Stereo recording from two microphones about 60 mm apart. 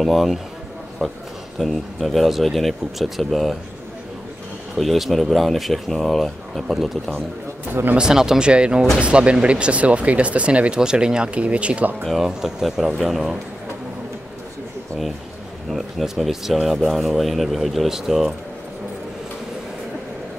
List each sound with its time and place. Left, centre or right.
0.0 s speech: centre
1.6 s speech: centre
4.7 s speech: centre
8.0 s speech: centre
12.0 s speech: centre
12.3 s speech: centre
15.7 s speech: centre